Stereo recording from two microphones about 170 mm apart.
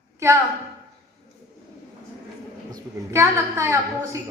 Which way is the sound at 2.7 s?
15° right (ahead or behind).